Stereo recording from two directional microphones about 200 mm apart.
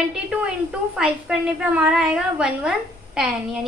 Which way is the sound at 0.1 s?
5° right (ahead or behind).